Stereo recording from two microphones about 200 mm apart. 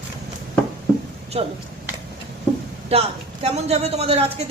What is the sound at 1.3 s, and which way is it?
Speech, 30° right (ahead or behind).